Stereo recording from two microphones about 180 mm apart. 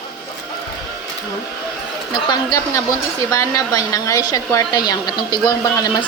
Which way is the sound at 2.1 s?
25° left (ahead or behind).